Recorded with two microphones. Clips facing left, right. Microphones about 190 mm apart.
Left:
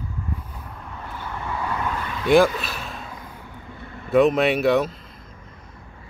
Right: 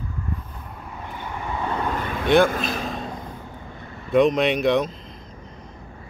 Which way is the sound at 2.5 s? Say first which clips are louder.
Right 5 dB; 40° right (ahead or behind).